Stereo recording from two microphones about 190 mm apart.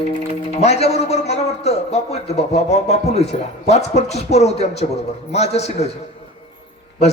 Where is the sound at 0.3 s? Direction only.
35° left (ahead or behind).